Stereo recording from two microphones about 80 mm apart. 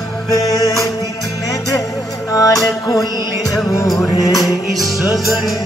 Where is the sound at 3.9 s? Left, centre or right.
Left.